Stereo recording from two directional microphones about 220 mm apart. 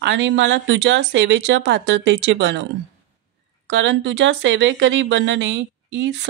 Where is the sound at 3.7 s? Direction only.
55° right (ahead or behind).